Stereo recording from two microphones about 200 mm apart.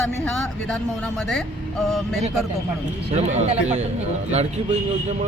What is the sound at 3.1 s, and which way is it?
Speech, 35° right (ahead or behind).